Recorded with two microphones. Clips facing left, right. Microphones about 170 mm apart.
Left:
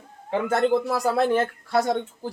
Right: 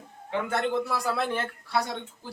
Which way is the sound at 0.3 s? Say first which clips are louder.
Left 7 dB; 40° left (ahead or behind).